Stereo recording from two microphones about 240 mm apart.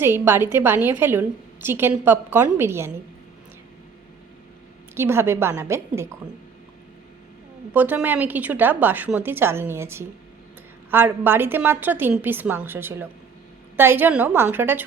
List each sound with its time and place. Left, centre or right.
0.0 s a woman's voice: centre
4.9 s a woman's voice: centre
7.7 s a woman's voice: centre